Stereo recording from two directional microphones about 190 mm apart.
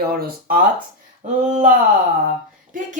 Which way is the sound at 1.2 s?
40° right (ahead or behind).